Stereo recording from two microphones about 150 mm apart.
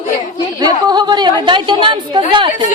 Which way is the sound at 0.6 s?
30° right (ahead or behind).